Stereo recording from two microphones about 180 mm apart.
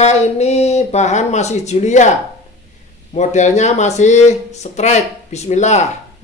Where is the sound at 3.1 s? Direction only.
40° left (ahead or behind).